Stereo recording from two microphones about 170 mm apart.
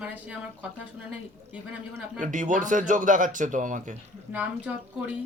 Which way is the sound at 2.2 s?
50° right (ahead or behind).